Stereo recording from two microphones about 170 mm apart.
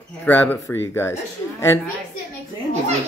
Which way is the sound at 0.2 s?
10° left (ahead or behind).